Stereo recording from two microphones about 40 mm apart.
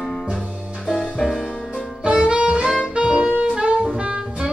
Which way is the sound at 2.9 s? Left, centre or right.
Right.